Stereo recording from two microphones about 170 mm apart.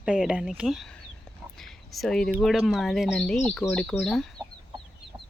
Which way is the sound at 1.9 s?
Centre (ahead or behind).